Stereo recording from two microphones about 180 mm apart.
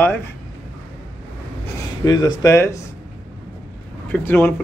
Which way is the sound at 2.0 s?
20° left (ahead or behind).